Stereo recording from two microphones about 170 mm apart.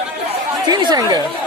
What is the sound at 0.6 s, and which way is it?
Chatter, 25° right (ahead or behind).